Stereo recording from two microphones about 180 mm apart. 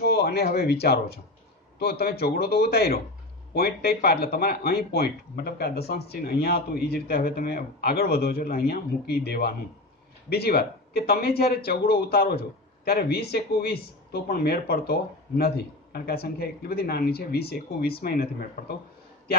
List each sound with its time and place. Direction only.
0.0 s speech: 65° left (ahead or behind)